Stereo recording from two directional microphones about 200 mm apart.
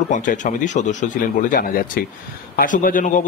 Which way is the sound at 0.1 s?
40° left (ahead or behind).